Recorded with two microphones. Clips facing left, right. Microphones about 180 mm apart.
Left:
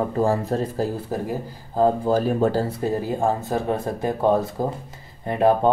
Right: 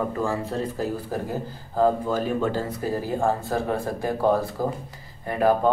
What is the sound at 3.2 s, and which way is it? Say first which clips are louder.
Speech: left 1 dB; 20° left (ahead or behind).